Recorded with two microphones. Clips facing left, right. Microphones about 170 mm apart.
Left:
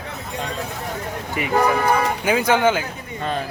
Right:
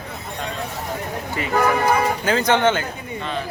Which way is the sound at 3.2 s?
40° left (ahead or behind).